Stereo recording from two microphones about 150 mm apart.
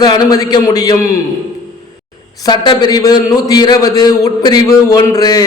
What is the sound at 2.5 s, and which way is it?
A man's voice, 30° left (ahead or behind).